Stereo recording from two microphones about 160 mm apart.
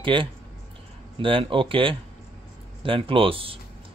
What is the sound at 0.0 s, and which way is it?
Speech, 30° right (ahead or behind).